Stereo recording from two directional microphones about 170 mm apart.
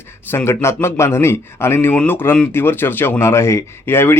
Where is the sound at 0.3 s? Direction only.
15° left (ahead or behind).